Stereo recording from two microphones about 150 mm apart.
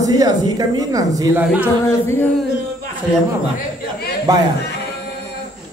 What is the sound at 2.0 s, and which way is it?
Speech, 15° left (ahead or behind).